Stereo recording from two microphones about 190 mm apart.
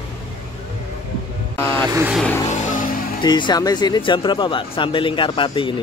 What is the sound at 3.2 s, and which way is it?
Speech, 25° left (ahead or behind).